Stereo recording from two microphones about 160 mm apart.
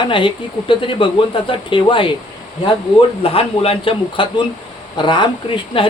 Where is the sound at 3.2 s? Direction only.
35° left (ahead or behind).